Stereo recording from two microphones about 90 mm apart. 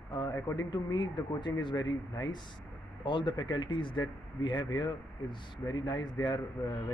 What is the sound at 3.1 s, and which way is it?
Speech, 60° left (ahead or behind).